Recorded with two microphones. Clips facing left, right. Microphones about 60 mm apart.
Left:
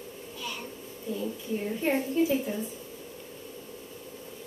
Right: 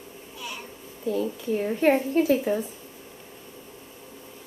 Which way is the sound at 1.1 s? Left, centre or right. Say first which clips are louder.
Right 5 dB; right.